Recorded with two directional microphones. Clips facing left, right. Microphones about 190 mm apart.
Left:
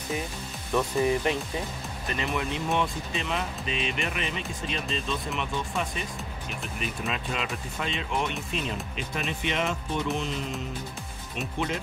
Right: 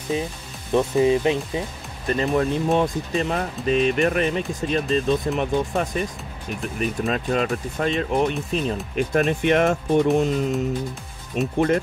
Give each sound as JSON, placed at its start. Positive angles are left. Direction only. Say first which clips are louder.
{"t": 0.1, "sound": "speech", "louder": "right 6 dB", "side_deg": -25}
{"t": 2.0, "sound": "speech", "louder": "right 10 dB", "side_deg": -40}